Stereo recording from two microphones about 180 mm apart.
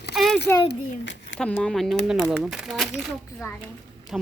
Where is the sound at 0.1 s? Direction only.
Centre (ahead or behind).